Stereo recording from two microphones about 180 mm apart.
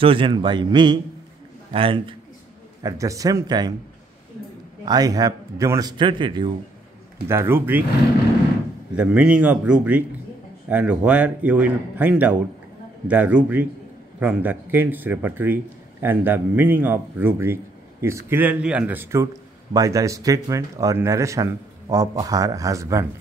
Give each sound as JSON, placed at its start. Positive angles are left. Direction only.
{"t": 0.0, "sound": "a man's voice", "side_deg": -30}
{"t": 2.8, "sound": "speech", "side_deg": -20}
{"t": 4.8, "sound": "speech", "side_deg": -20}
{"t": 7.2, "sound": "speech", "side_deg": -15}
{"t": 8.9, "sound": "speech", "side_deg": -5}